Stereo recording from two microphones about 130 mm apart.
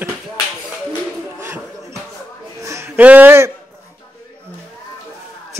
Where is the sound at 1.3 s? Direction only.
20° right (ahead or behind).